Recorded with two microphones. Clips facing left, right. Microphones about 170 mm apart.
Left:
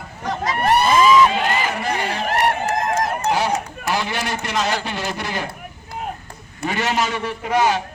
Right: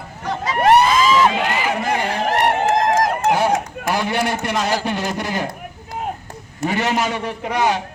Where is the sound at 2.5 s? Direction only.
90° right.